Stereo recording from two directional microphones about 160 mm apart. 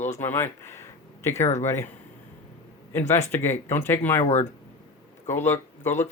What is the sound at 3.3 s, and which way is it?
Speech, 15° left (ahead or behind).